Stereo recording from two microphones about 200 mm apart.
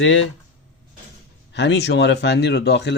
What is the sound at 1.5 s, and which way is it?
Speech, 60° left (ahead or behind).